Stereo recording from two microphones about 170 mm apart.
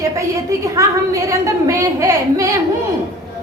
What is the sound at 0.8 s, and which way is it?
A woman's voice, 20° right (ahead or behind).